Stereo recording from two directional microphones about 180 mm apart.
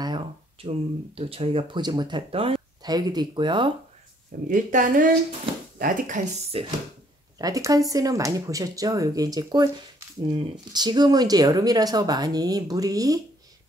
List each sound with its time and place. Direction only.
0.0 s speech: 25° right (ahead or behind)
4.5 s speech: 45° right (ahead or behind)
7.3 s speech: 20° right (ahead or behind)